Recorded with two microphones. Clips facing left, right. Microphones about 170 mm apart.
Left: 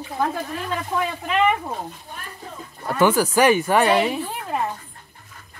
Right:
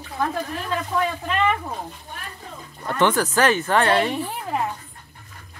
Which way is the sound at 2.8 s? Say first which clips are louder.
Left 2 dB; 10° left (ahead or behind).